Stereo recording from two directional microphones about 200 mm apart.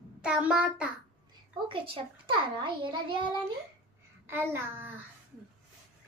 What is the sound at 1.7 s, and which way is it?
A child's voice, 25° right (ahead or behind).